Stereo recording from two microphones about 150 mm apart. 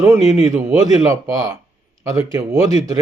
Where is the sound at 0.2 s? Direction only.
45° left (ahead or behind).